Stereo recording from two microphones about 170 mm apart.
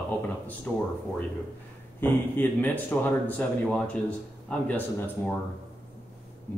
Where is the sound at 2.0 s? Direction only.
10° left (ahead or behind).